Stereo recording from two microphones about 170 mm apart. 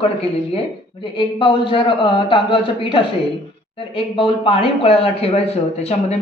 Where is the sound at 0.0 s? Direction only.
35° left (ahead or behind).